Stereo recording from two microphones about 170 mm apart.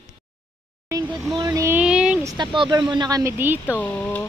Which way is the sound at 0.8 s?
20° right (ahead or behind).